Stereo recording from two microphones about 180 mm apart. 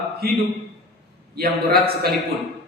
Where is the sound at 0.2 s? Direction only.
60° right (ahead or behind).